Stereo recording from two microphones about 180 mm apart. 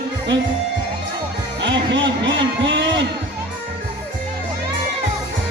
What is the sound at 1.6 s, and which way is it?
Music, 90° right.